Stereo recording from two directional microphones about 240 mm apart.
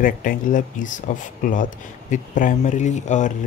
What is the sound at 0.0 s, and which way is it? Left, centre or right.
Speech, left.